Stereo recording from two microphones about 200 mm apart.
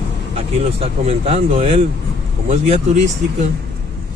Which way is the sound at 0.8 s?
30° right (ahead or behind).